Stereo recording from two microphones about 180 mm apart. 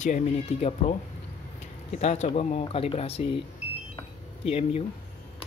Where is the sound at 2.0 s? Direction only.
40° left (ahead or behind).